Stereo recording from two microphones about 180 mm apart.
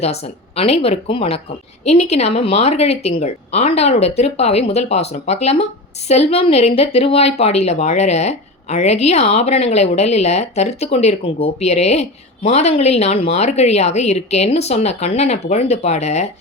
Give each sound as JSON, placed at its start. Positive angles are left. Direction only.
{"t": 0.0, "sound": "a woman's voice", "side_deg": 35}